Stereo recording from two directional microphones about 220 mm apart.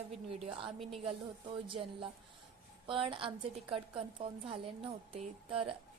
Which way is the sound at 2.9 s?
25° right (ahead or behind).